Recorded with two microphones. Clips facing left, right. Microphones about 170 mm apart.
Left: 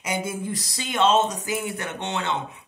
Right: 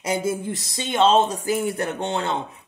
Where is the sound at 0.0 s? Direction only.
30° right (ahead or behind).